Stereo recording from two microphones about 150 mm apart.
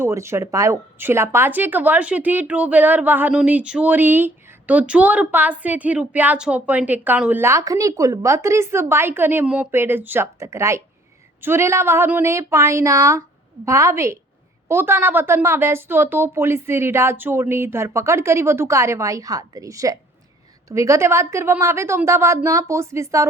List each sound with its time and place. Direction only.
0.0 s a woman's voice: 15° right (ahead or behind)